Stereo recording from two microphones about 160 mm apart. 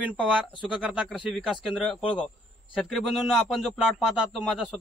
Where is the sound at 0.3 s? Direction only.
Centre (ahead or behind).